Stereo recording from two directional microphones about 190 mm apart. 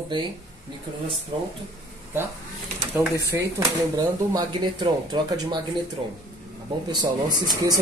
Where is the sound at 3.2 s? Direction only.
15° right (ahead or behind).